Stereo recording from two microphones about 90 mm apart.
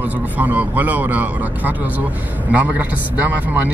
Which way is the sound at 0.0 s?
15° right (ahead or behind).